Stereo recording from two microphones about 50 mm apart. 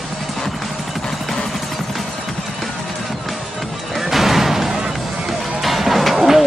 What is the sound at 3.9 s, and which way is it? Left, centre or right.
Music, centre.